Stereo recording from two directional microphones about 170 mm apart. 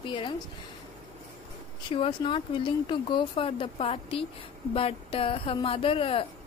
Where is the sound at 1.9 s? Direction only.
30° left (ahead or behind).